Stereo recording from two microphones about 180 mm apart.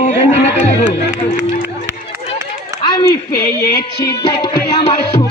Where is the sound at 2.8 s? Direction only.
25° left (ahead or behind).